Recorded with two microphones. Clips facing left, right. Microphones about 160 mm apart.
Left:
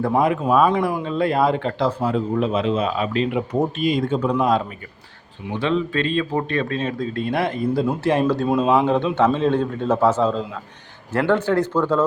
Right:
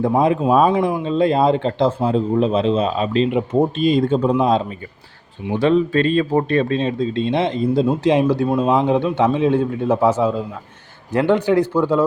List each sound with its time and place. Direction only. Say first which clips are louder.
0.2 s speech: right 2 dB; 25° right (ahead or behind)
5.5 s a man's voice: right 6 dB; 40° right (ahead or behind); by 12.0 s 10° right (ahead or behind)